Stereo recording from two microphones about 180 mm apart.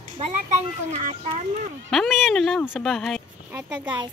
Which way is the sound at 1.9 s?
Centre (ahead or behind).